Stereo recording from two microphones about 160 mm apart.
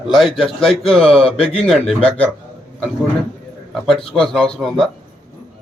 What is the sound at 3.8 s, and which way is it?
A man's voice, centre (ahead or behind).